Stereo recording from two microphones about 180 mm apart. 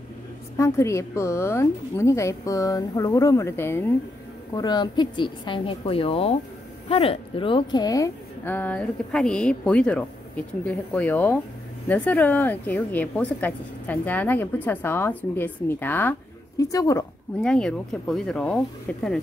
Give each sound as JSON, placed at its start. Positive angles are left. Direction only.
{"t": 0.6, "sound": "a woman's voice", "side_deg": 15}
{"t": 4.6, "sound": "a woman's voice", "side_deg": 25}
{"t": 17.4, "sound": "speech", "side_deg": 5}